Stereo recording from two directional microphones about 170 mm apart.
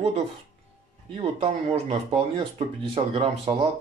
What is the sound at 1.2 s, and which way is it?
Speech, 35° right (ahead or behind).